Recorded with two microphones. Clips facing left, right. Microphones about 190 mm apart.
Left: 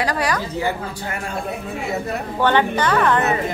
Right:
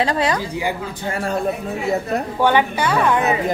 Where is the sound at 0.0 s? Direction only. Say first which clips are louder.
Right 2 dB; 25° right (ahead or behind).